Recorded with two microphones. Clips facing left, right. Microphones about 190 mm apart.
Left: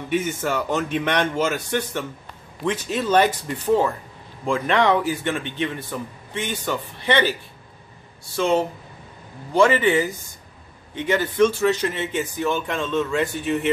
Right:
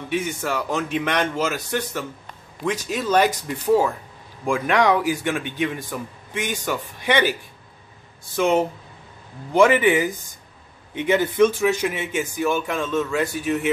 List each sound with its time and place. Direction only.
0.1 s a man's voice: centre (ahead or behind)